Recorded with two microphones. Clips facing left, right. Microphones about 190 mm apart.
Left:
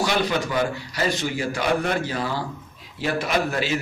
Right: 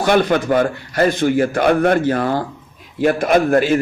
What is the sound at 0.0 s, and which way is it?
A man's voice, 55° right (ahead or behind).